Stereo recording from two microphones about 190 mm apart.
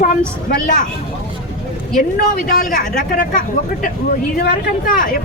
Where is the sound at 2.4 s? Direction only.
45° left (ahead or behind).